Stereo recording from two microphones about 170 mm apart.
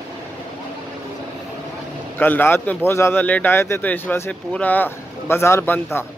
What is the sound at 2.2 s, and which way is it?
A man's voice, 10° left (ahead or behind).